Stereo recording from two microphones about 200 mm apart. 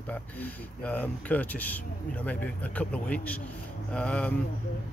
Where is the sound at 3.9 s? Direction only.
5° left (ahead or behind).